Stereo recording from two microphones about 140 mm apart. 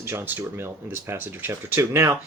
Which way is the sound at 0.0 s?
15° right (ahead or behind).